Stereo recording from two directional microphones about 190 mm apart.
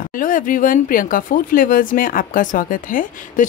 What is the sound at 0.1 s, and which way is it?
Speech, 45° left (ahead or behind).